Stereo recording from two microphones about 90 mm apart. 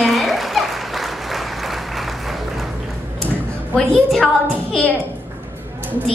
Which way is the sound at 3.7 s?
5° left (ahead or behind).